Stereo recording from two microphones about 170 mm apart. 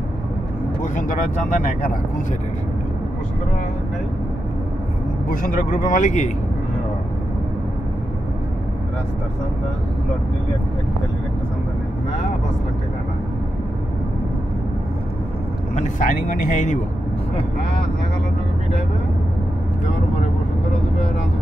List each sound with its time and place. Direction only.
0.9 s speech: 55° left (ahead or behind)
5.3 s speech: 55° left (ahead or behind)
15.7 s speech: 45° left (ahead or behind)